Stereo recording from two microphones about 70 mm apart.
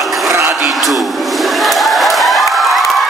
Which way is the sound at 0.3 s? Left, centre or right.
Right.